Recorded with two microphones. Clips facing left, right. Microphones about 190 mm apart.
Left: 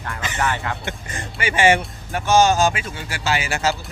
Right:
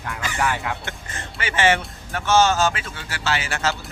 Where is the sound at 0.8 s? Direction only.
15° left (ahead or behind).